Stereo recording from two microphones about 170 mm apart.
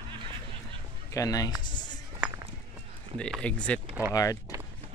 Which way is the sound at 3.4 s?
5° left (ahead or behind).